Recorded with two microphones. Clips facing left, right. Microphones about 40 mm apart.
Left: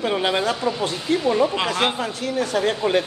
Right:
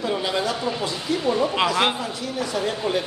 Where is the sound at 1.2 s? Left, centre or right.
Centre.